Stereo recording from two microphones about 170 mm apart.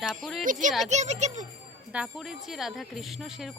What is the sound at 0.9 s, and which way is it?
Music, 40° right (ahead or behind).